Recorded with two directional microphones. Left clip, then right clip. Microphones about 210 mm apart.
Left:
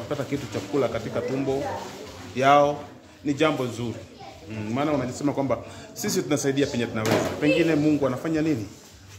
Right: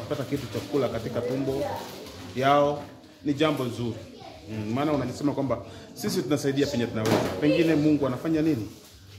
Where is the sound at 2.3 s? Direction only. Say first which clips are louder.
Left 3 dB; 20° left (ahead or behind).